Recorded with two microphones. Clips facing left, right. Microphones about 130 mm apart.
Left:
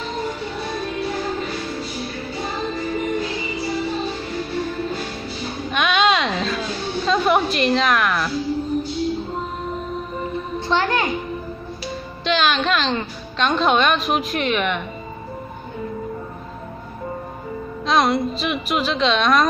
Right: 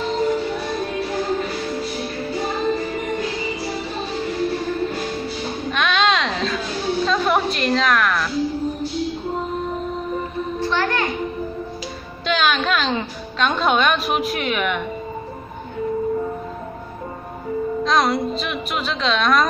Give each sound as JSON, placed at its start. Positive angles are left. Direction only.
{"t": 5.7, "sound": "a sound", "side_deg": 5}
{"t": 10.7, "sound": "music", "side_deg": 20}
{"t": 12.3, "sound": "a woman's voice", "side_deg": 0}
{"t": 17.8, "sound": "a woman's voice", "side_deg": 0}